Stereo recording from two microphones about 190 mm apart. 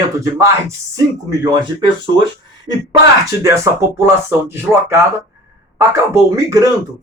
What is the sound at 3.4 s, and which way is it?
Speech, 15° right (ahead or behind).